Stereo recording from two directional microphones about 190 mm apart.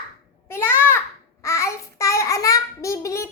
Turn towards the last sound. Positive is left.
turn(degrees=15)  # may be behind; listen again after turning